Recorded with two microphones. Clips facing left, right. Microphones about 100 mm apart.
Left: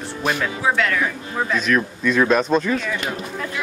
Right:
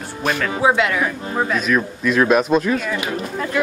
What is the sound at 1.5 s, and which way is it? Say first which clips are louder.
Speech: left 2 dB; 5° right (ahead or behind).